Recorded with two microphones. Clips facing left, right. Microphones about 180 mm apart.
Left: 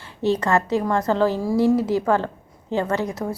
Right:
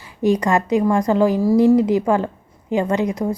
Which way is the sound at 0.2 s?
15° right (ahead or behind).